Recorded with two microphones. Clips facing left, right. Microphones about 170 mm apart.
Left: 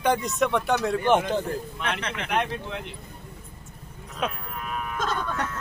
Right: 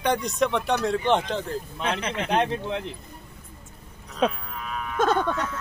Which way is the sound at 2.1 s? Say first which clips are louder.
Right 4 dB; 30° right (ahead or behind).